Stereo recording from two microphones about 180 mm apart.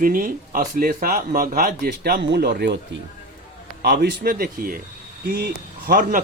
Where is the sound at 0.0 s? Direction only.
50° right (ahead or behind).